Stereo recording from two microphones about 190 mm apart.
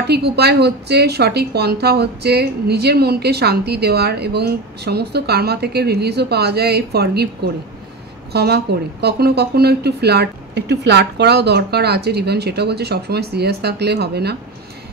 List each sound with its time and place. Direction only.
0.0 s a woman's voice: 60° right (ahead or behind)
8.3 s a woman's voice: 60° right (ahead or behind)